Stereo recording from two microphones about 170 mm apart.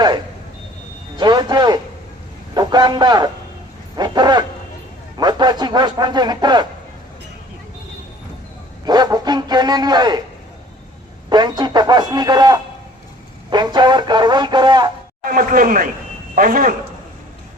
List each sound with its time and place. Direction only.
1.1 s speech: 25° right (ahead or behind)
8.8 s speech: 25° right (ahead or behind)
11.3 s speech: 25° right (ahead or behind)
15.2 s speech: 55° right (ahead or behind)